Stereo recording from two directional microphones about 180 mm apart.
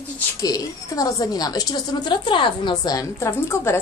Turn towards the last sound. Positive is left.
turn(degrees=15)  # may be behind; listen again after turning